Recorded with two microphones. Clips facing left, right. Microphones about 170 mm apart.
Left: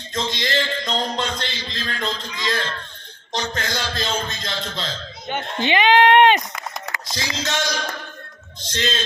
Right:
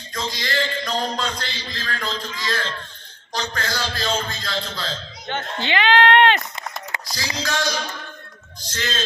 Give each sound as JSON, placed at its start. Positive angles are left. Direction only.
{"t": 0.1, "sound": "a man's voice", "side_deg": 25}
{"t": 8.6, "sound": "a man's voice", "side_deg": 20}